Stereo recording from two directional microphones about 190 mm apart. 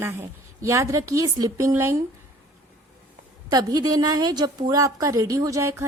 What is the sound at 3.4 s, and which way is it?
A woman's voice, 20° right (ahead or behind).